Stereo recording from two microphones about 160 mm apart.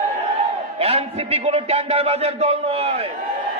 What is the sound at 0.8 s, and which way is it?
A man's voice, 40° right (ahead or behind).